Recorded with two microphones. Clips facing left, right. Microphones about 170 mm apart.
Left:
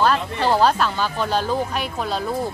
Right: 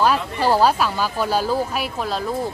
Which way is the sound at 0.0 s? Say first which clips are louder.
Right 1 dB; 10° right (ahead or behind).